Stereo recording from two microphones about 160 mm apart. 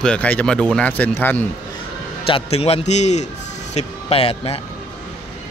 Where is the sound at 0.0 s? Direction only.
5° left (ahead or behind).